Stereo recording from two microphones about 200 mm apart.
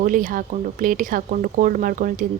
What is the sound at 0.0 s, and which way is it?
A woman's voice, 40° right (ahead or behind).